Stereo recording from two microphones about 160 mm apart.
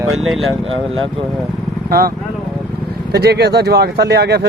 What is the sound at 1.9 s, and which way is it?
Speech, 70° right (ahead or behind).